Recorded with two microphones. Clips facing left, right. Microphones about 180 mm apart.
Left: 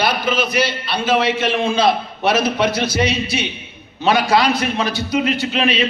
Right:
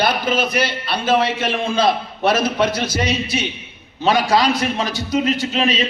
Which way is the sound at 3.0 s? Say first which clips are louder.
Left 1 dB; 45° right (ahead or behind).